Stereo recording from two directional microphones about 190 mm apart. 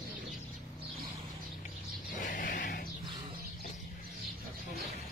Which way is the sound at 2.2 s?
45° left (ahead or behind).